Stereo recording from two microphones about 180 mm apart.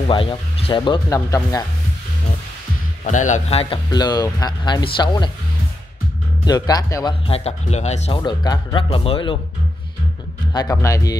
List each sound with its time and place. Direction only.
0.0 s speech: 30° left (ahead or behind)
3.0 s speech: 45° left (ahead or behind); by 5.3 s 25° left (ahead or behind)
6.4 s speech: 20° left (ahead or behind)
7.2 s speech: 35° left (ahead or behind)
8.2 s speech: 25° left (ahead or behind)
10.5 s speech: 20° left (ahead or behind)